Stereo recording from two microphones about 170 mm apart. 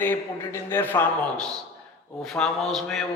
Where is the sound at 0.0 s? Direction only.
10° left (ahead or behind).